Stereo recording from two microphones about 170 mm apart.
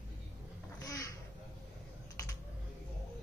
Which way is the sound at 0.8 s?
20° left (ahead or behind).